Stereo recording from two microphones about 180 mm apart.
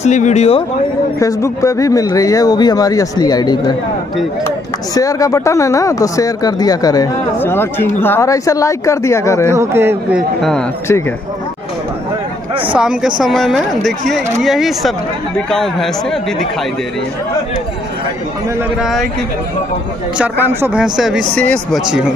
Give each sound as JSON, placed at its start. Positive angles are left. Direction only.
{"t": 0.0, "sound": "speech", "side_deg": 40}
{"t": 1.2, "sound": "speech", "side_deg": 15}
{"t": 9.5, "sound": "a man's voice", "side_deg": -15}
{"t": 12.7, "sound": "speech", "side_deg": -5}
{"t": 18.8, "sound": "speech", "side_deg": 0}
{"t": 20.2, "sound": "speech", "side_deg": -5}